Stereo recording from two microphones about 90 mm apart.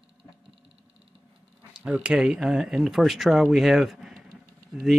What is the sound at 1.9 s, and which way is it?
Speech, 10° right (ahead or behind).